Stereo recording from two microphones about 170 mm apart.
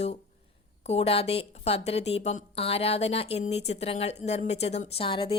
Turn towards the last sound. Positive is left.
turn(degrees=30)  # may be behind; listen again after turning